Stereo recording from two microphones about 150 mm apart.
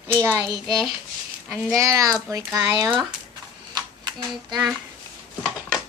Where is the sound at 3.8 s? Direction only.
30° right (ahead or behind).